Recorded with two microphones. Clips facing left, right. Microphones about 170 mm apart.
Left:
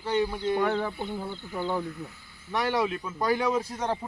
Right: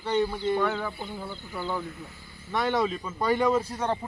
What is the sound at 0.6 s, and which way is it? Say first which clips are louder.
Speech: left 2 dB; 35° left (ahead or behind).